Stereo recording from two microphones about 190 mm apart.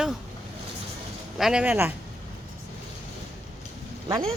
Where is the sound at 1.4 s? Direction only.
5° right (ahead or behind).